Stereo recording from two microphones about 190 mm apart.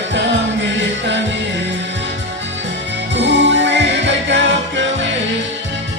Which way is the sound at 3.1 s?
70° right (ahead or behind).